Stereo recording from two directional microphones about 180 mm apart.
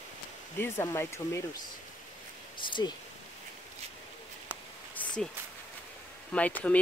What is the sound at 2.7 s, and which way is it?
Speech, 25° left (ahead or behind).